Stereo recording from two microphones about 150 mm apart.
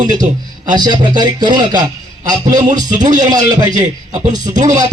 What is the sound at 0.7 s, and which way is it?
A man's voice, 30° right (ahead or behind).